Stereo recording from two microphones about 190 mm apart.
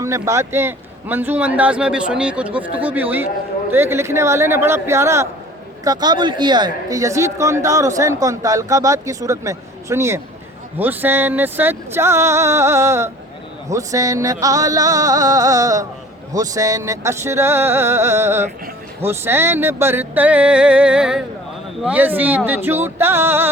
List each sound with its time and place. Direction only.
0.0 s speech: 15° right (ahead or behind)